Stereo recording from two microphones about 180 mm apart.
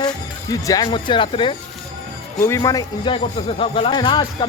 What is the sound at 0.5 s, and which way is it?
Speech, 20° left (ahead or behind).